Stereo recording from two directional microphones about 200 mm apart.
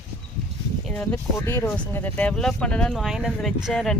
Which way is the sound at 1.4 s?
10° left (ahead or behind).